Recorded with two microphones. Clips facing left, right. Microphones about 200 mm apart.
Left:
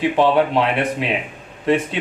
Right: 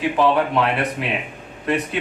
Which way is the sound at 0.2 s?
25° left (ahead or behind).